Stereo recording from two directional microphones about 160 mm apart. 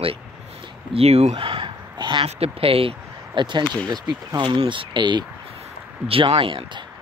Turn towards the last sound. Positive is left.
turn(degrees=-35)  # may be behind; listen again after turning